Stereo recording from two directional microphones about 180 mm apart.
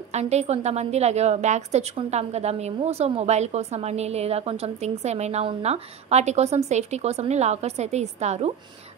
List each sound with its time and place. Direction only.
0.1 s a woman's voice: 40° right (ahead or behind)